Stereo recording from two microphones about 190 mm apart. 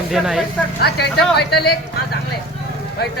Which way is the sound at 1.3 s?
55° left (ahead or behind).